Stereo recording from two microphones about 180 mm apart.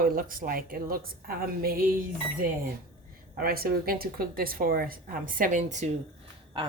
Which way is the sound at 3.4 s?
55° right (ahead or behind).